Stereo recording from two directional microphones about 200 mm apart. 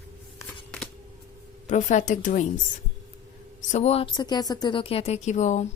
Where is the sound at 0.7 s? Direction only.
5° left (ahead or behind).